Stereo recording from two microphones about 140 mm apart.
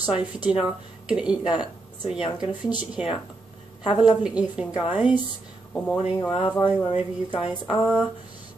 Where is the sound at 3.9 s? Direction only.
35° left (ahead or behind).